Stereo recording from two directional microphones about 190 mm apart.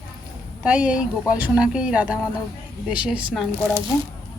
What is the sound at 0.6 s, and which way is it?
A woman's voice, 5° right (ahead or behind).